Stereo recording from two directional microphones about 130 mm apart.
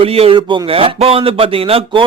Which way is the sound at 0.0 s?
45° right (ahead or behind).